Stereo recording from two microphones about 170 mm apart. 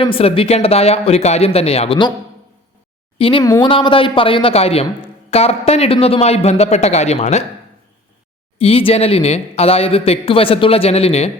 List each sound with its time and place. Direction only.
0.0 s speech: 30° left (ahead or behind)
3.2 s speech: 30° left (ahead or behind)
3.4 s speech: 20° left (ahead or behind)
3.7 s speech: 30° left (ahead or behind)
8.5 s speech: 35° left (ahead or behind)